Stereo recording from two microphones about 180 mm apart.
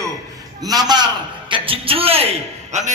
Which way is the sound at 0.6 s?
20° right (ahead or behind).